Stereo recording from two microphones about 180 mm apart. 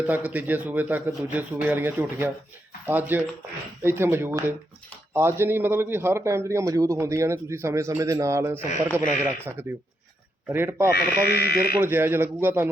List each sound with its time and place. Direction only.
0.1 s a man's voice: 10° right (ahead or behind)
10.9 s speech: 60° left (ahead or behind)
11.8 s a man's voice: 10° right (ahead or behind)